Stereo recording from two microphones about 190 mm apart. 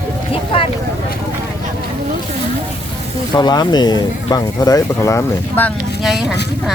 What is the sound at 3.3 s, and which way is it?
Speech, 20° left (ahead or behind).